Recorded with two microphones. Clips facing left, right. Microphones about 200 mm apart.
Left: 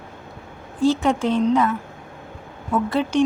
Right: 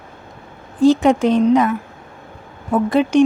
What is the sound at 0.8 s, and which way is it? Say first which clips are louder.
Speech: right 6 dB; 15° right (ahead or behind).